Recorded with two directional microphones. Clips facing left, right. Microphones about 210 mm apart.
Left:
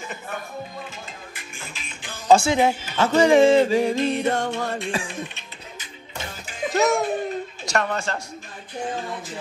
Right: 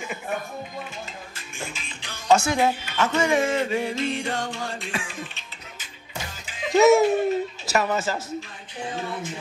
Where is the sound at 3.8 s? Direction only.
50° left (ahead or behind).